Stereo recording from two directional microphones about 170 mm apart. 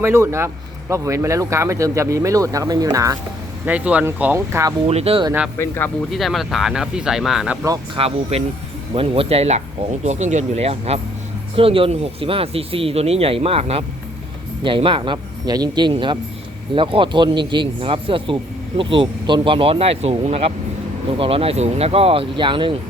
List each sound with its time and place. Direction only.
0.0 s speech: 15° right (ahead or behind)
3.7 s speech: 10° right (ahead or behind)
4.9 s speech: 35° right (ahead or behind)
5.5 s speech: 15° left (ahead or behind)
6.1 s speech: centre (ahead or behind)
7.9 s speech: 35° right (ahead or behind)